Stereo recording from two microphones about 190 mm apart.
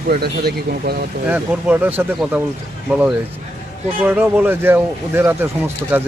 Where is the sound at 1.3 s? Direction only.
10° right (ahead or behind).